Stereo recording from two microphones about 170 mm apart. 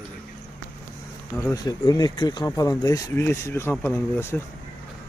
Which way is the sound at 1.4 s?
20° left (ahead or behind).